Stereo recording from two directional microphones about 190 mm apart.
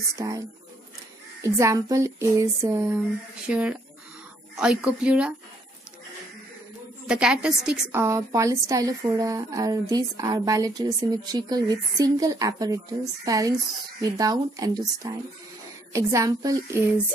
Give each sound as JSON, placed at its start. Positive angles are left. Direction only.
{"t": 0.1, "sound": "a woman's voice", "side_deg": -15}
{"t": 1.4, "sound": "a woman's voice", "side_deg": -15}
{"t": 7.1, "sound": "a woman's voice", "side_deg": -5}